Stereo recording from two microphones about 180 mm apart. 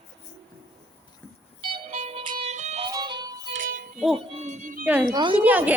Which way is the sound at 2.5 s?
40° right (ahead or behind).